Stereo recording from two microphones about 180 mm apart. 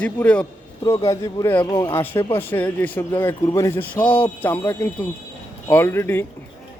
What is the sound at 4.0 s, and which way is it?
Speech, 30° left (ahead or behind).